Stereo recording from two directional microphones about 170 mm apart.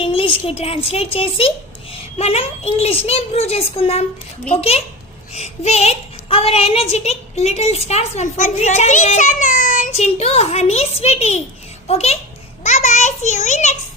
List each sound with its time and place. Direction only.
0.0 s a sound: 30° left (ahead or behind)
0.4 s a woman's voice: 35° left (ahead or behind)
5.3 s a woman's voice: 40° left (ahead or behind)